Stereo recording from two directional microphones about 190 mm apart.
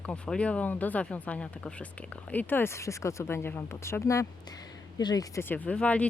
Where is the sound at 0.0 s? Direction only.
5° left (ahead or behind).